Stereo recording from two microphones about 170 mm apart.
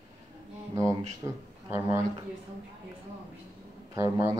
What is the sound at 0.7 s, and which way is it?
Speech, 15° right (ahead or behind).